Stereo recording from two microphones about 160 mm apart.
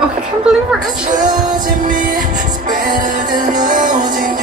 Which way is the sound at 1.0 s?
55° right (ahead or behind).